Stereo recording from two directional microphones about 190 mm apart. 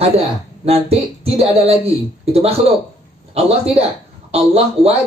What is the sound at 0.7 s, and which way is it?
A woman's voice, 30° right (ahead or behind).